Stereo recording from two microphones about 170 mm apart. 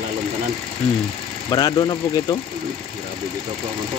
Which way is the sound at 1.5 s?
25° left (ahead or behind).